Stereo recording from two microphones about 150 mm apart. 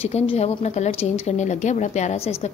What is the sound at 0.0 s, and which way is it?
A woman's voice, 45° left (ahead or behind).